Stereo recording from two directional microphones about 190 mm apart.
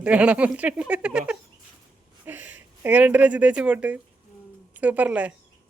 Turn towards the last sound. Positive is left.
turn(degrees=-5)  # may be behind; listen again after turning